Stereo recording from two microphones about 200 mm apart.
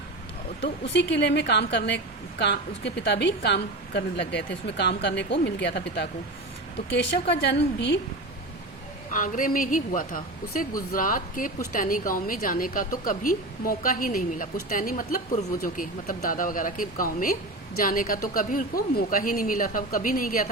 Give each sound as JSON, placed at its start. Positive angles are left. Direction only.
{"t": 0.6, "sound": "a woman's voice", "side_deg": 60}
{"t": 9.1, "sound": "speech", "side_deg": 40}